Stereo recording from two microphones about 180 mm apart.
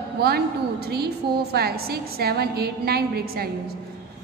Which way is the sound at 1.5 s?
60° right (ahead or behind).